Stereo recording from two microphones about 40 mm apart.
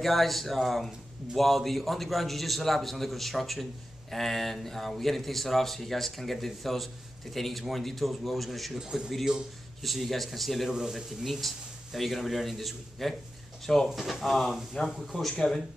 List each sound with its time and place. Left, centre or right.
0.0 s speech: centre
8.7 s speech: centre
9.8 s speech: centre
10.7 s speech: centre
11.4 s speech: centre